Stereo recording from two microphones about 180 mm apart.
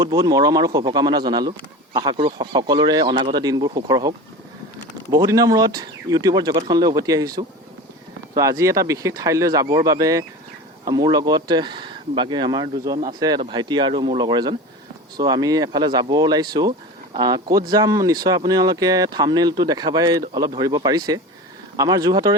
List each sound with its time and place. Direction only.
0.0 s speech: 20° right (ahead or behind)
5.1 s speech: 20° right (ahead or behind)